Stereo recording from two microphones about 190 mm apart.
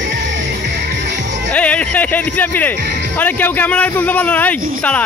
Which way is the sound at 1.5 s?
5° left (ahead or behind).